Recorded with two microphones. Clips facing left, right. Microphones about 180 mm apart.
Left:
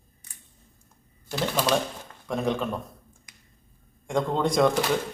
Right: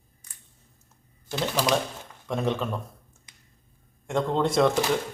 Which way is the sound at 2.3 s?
Centre (ahead or behind).